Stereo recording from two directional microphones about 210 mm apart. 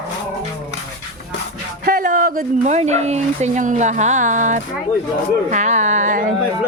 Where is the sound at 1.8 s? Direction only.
45° right (ahead or behind).